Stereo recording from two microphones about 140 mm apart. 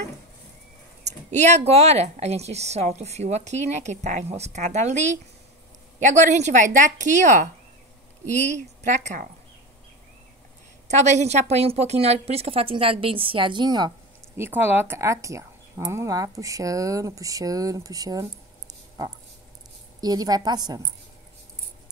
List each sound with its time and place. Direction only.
1.0 s a sound: 55° right (ahead or behind)
1.7 s a woman's voice: 50° right (ahead or behind)
10.9 s a woman's voice: 55° right (ahead or behind); by 13.9 s 30° right (ahead or behind)
14.3 s speech: 15° right (ahead or behind)
18.7 s a sound: 25° right (ahead or behind)
20.0 s speech: 30° right (ahead or behind)